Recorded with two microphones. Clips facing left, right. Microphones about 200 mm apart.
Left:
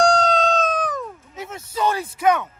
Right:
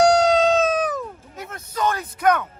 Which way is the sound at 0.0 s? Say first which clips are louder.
Right 3 dB; 10° right (ahead or behind).